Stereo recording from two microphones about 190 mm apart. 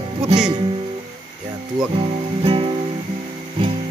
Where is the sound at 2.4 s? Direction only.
30° right (ahead or behind).